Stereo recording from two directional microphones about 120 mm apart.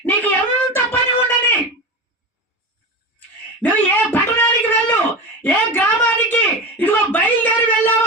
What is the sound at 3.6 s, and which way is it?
A woman's voice, 15° left (ahead or behind).